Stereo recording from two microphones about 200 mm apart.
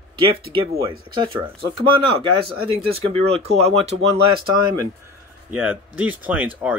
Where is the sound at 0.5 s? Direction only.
20° right (ahead or behind).